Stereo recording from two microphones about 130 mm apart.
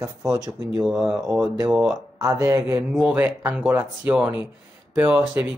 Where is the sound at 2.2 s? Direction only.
20° right (ahead or behind).